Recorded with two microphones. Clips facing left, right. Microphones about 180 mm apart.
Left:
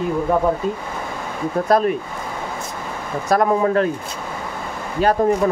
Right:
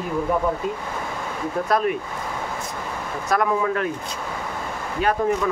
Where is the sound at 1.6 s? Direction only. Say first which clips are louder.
Left 5 dB; 35° left (ahead or behind).